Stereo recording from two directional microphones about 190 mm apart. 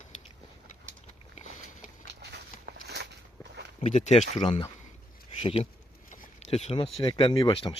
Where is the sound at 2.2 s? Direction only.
60° right (ahead or behind).